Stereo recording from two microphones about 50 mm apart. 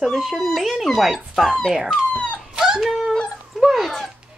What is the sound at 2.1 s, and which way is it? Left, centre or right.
Dog, left.